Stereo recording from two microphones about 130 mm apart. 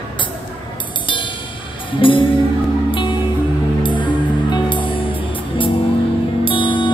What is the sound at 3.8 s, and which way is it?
Music, 40° left (ahead or behind).